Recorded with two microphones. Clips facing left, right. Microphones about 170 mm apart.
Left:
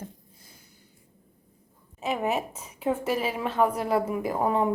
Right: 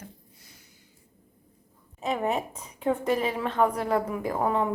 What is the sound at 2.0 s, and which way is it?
A woman's voice, 5° left (ahead or behind).